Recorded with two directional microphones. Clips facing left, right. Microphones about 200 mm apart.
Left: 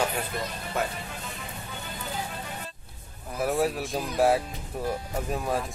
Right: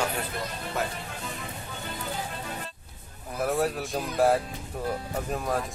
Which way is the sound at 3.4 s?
Centre (ahead or behind).